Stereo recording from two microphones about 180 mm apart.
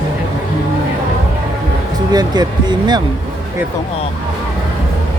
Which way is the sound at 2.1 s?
20° right (ahead or behind).